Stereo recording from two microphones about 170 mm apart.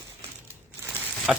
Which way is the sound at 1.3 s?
5° right (ahead or behind).